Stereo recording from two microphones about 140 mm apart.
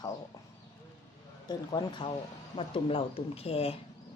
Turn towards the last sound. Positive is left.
turn(degrees=45)  # may be behind; listen again after turning